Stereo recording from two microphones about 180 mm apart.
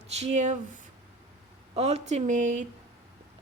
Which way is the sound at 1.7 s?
35° right (ahead or behind).